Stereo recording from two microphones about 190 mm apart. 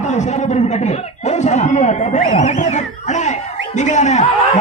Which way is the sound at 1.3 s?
35° left (ahead or behind).